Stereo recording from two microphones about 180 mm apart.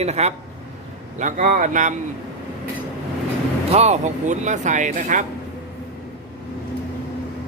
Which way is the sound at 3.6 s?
35° right (ahead or behind).